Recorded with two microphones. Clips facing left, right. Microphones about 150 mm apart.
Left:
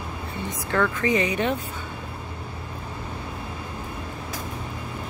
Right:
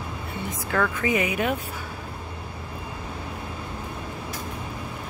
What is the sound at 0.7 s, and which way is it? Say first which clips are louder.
Speech: left 2 dB; 5° right (ahead or behind).